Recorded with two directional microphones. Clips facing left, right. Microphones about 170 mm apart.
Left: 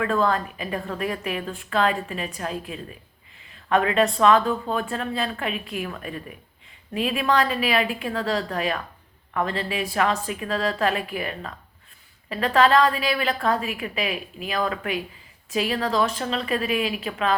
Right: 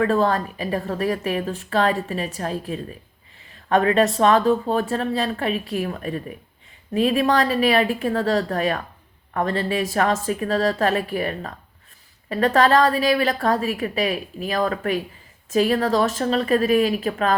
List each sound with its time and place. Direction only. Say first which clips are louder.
0.0 s a woman's voice: right 3 dB; 35° right (ahead or behind)